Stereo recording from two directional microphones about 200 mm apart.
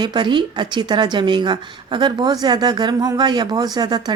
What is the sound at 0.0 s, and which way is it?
A woman's voice, 20° right (ahead or behind).